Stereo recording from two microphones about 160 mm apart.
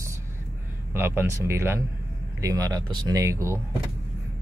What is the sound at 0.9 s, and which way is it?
Speech, 15° right (ahead or behind).